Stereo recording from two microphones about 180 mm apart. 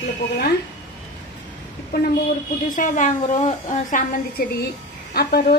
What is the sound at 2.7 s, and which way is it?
A woman's voice, 45° left (ahead or behind).